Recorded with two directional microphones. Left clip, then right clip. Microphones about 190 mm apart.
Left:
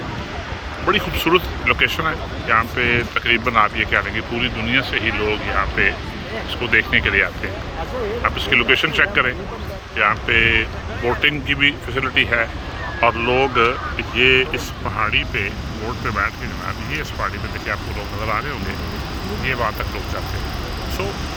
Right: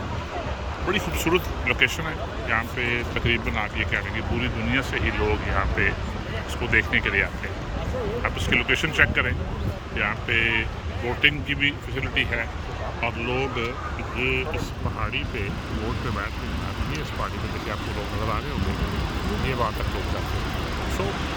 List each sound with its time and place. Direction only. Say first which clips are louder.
0.9 s speech: left 7 dB; 15° right (ahead or behind)
19.5 s speech: left 6 dB; centre (ahead or behind)